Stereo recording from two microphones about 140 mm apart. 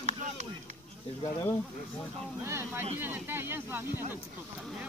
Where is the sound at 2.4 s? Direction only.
20° right (ahead or behind).